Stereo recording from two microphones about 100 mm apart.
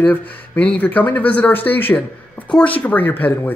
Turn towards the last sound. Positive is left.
turn(degrees=20)  # may be behind; listen again after turning